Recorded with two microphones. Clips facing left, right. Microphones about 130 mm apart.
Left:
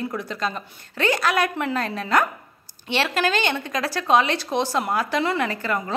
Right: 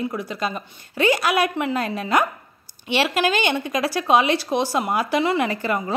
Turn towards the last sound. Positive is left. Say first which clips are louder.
# right 2 dB
turn(degrees=-15)  # may be behind; listen again after turning